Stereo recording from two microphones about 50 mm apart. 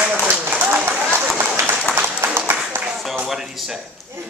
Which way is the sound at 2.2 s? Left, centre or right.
Right.